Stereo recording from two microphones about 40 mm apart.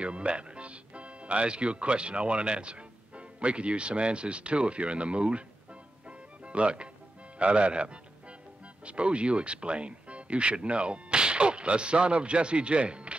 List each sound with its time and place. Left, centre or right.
0.0 s speech: right
6.0 s music: right
7.3 s speech: right